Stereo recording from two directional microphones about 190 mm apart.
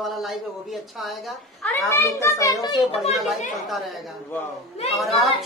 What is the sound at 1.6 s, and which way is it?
A man's voice, 10° left (ahead or behind).